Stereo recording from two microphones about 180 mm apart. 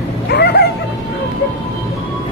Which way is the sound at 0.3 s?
65° left (ahead or behind).